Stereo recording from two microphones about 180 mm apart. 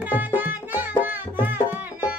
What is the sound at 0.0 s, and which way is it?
Music, 10° right (ahead or behind).